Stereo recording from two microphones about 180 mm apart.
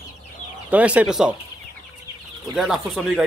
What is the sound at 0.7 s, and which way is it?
Speech, 5° right (ahead or behind).